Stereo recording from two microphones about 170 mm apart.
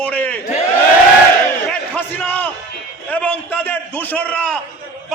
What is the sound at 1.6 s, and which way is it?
A man's voice, 10° left (ahead or behind).